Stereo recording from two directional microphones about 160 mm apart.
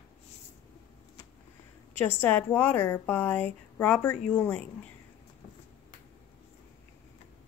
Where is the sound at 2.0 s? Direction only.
10° left (ahead or behind).